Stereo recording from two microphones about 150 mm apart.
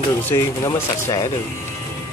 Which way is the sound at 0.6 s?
25° left (ahead or behind).